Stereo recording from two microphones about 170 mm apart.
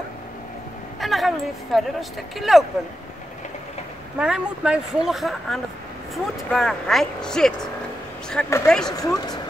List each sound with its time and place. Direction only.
1.0 s speech: centre (ahead or behind)
4.2 s speech: 5° right (ahead or behind)
8.6 s speech: 5° left (ahead or behind)
8.9 s speech: 20° left (ahead or behind)